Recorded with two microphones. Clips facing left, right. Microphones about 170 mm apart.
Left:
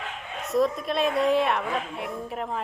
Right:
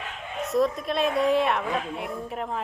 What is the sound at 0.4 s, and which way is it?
A woman's voice, centre (ahead or behind).